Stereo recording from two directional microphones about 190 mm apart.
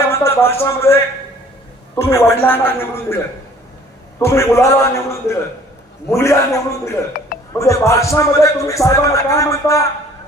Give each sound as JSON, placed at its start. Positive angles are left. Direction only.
{"t": 0.1, "sound": "a sound", "side_deg": 15}
{"t": 0.6, "sound": "a man's voice", "side_deg": 15}
{"t": 4.2, "sound": "a man's voice", "side_deg": 15}